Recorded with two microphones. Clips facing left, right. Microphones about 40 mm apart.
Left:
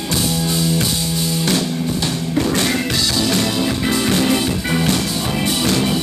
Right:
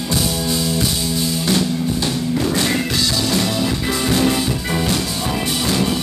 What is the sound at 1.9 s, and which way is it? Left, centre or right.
Music, centre.